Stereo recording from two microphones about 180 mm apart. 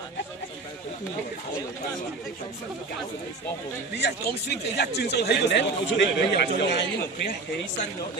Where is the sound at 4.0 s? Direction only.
65° left (ahead or behind).